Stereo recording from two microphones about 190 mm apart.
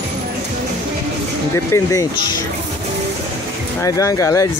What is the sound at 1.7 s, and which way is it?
Speech, 15° left (ahead or behind).